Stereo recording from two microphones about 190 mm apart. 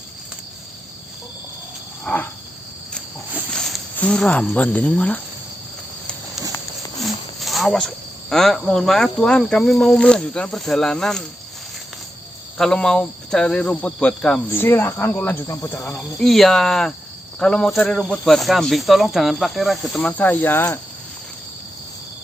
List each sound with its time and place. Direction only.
2.1 s wild animals: 10° left (ahead or behind)
3.5 s speech: 5° left (ahead or behind)
7.0 s speech: centre (ahead or behind)
12.5 s speech: 5° left (ahead or behind)